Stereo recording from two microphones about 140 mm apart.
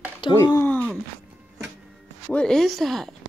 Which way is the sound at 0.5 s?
15° left (ahead or behind).